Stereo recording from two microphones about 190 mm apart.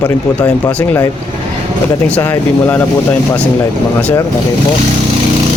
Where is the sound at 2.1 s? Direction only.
10° left (ahead or behind).